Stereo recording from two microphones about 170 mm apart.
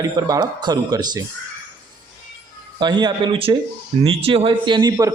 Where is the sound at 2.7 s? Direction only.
25° right (ahead or behind).